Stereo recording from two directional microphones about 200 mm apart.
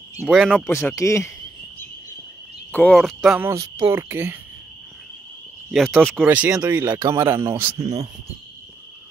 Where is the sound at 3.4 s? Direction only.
15° right (ahead or behind).